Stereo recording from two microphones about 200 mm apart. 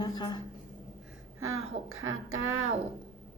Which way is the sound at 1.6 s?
90° right.